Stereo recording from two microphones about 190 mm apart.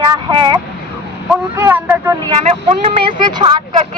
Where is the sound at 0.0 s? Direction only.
25° right (ahead or behind).